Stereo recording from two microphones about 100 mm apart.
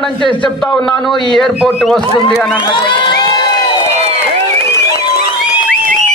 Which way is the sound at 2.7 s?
50° left (ahead or behind).